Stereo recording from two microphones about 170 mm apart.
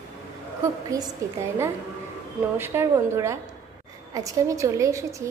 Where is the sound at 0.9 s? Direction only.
20° right (ahead or behind).